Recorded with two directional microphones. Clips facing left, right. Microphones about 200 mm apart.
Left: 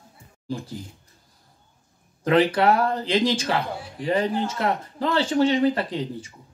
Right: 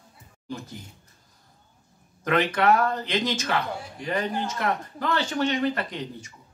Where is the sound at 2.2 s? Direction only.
30° left (ahead or behind).